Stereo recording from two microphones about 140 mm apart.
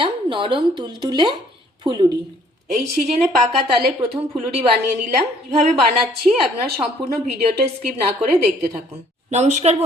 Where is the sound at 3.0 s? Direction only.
60° right (ahead or behind).